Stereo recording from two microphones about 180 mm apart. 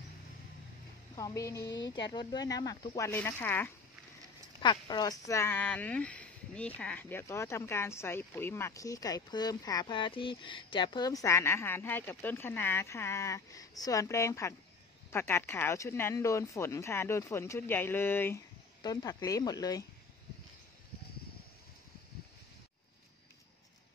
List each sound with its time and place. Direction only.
1.1 s speech: 20° left (ahead or behind)
3.1 s speech: 10° left (ahead or behind)
4.6 s speech: 25° left (ahead or behind)